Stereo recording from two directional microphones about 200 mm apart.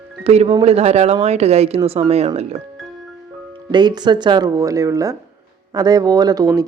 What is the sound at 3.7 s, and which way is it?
Speech, 20° right (ahead or behind).